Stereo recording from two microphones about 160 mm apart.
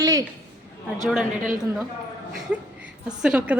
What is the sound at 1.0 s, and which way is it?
Speech, 5° right (ahead or behind).